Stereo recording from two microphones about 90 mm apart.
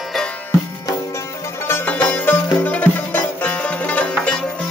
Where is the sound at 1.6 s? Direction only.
20° left (ahead or behind).